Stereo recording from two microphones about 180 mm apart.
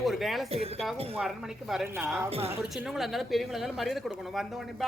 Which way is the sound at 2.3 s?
35° right (ahead or behind).